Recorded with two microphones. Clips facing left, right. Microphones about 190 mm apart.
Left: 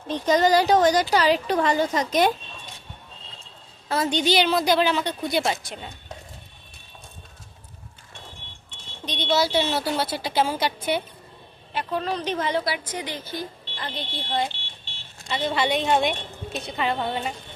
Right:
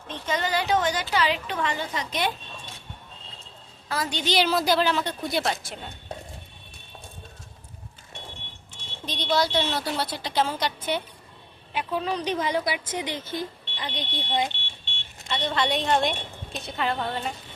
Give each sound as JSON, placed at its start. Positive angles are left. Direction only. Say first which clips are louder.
{"t": 0.1, "sound": "a woman's voice", "louder": "left 9 dB", "side_deg": 40}
{"t": 3.8, "sound": "a woman's voice", "louder": "left 6 dB", "side_deg": 25}
{"t": 4.4, "sound": "a woman's voice", "louder": "right 1 dB", "side_deg": 0}
{"t": 8.7, "sound": "speech", "louder": "left 2 dB", "side_deg": 0}
{"t": 11.7, "sound": "a woman's voice", "louder": "left 1 dB", "side_deg": -10}
{"t": 13.7, "sound": "a woman's voice", "louder": "even", "side_deg": 0}
{"t": 14.5, "sound": "car alarm", "louder": "right 2 dB", "side_deg": 35}
{"t": 15.3, "sound": "a woman's voice", "louder": "left 2 dB", "side_deg": 5}